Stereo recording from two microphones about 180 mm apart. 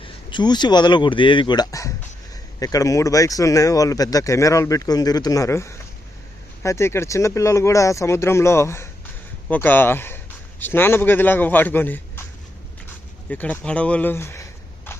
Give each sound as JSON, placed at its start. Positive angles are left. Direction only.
{"t": 0.0, "sound": "speech", "side_deg": 25}
{"t": 13.3, "sound": "speech", "side_deg": 10}